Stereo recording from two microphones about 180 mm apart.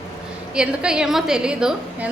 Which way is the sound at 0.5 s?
5° right (ahead or behind).